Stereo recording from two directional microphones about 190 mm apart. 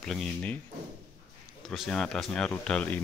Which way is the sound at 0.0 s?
5° left (ahead or behind).